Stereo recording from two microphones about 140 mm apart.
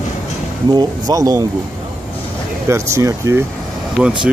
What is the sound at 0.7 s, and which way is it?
Speech, 30° right (ahead or behind).